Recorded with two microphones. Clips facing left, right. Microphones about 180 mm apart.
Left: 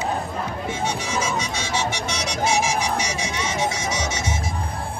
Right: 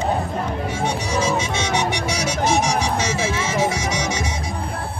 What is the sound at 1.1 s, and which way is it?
Vehicle, 30° right (ahead or behind).